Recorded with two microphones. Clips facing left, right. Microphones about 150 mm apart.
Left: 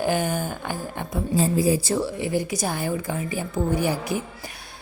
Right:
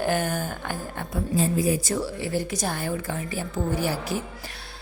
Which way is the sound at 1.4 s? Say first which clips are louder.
Left 3 dB; 35° left (ahead or behind).